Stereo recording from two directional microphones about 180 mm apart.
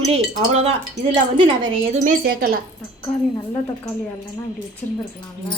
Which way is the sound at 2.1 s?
55° right (ahead or behind).